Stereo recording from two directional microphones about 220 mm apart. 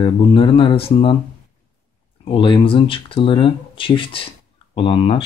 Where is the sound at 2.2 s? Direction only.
20° left (ahead or behind).